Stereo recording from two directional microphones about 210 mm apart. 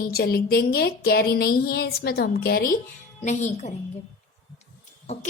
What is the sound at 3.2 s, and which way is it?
Speech, 35° left (ahead or behind).